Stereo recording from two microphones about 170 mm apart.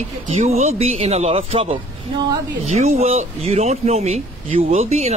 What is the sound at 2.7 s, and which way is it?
Speech, 40° right (ahead or behind).